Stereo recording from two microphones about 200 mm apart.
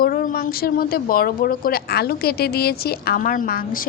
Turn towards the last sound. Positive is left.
turn(degrees=45)  # may be behind; listen again after turning